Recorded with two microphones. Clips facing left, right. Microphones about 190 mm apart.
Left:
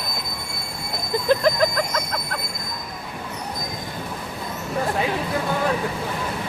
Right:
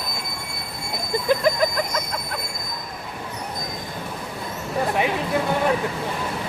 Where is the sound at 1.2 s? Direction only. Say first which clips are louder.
Left 1 dB; 10° right (ahead or behind).